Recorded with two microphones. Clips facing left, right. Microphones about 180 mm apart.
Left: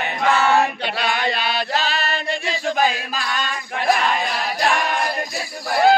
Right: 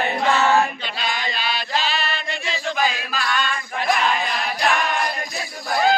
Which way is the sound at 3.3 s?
40° left (ahead or behind).